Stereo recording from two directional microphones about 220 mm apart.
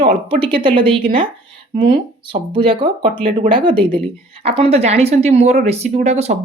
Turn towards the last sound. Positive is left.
turn(degrees=-30)  # may be behind; listen again after turning